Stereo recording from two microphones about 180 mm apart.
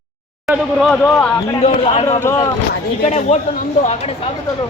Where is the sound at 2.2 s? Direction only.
15° left (ahead or behind).